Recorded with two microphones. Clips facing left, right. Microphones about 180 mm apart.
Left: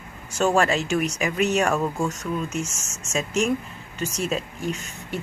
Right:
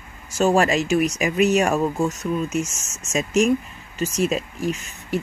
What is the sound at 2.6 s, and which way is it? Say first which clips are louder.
Speech: right 1 dB; 10° left (ahead or behind).